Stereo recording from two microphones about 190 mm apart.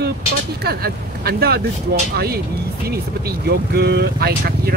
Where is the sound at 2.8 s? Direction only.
55° right (ahead or behind).